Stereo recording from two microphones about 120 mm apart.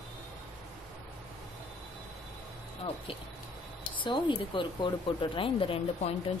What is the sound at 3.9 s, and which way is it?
Speech, 40° left (ahead or behind).